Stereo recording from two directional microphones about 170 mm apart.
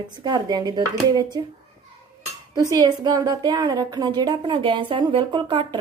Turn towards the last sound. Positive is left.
turn(degrees=-25)  # may be behind; listen again after turning